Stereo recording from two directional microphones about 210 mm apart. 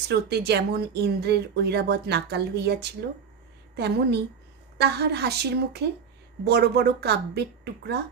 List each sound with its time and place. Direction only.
0.1 s speech: 50° right (ahead or behind)